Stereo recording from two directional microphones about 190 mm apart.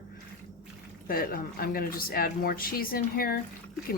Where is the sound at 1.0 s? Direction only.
50° left (ahead or behind).